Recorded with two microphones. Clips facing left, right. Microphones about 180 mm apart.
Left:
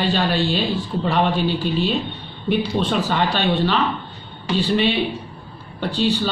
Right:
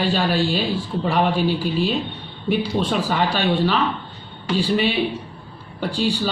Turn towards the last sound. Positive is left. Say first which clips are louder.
# left 1 dB
turn(degrees=-10)  # may be behind; listen again after turning